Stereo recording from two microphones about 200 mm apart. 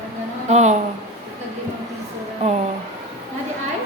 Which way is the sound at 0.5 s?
35° right (ahead or behind).